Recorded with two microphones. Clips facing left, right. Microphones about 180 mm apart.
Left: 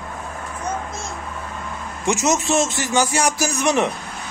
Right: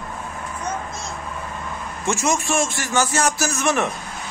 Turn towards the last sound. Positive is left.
turn(degrees=15)  # may be behind; listen again after turning